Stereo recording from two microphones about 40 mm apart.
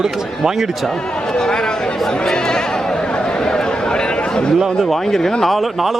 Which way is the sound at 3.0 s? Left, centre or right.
Left.